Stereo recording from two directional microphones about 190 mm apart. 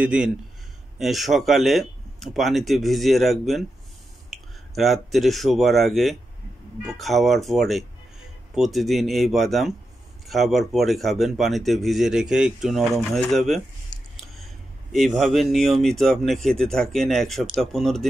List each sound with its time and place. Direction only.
0.0 s speech: 5° right (ahead or behind)
13.9 s a sound: 45° right (ahead or behind)
14.3 s speech: centre (ahead or behind)